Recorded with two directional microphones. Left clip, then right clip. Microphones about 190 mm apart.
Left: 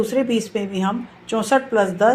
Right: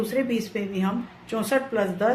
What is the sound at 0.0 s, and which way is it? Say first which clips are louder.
A woman's voice: left 6 dB; 25° left (ahead or behind).